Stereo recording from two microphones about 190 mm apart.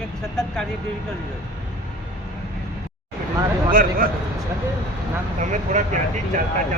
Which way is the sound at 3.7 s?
50° right (ahead or behind).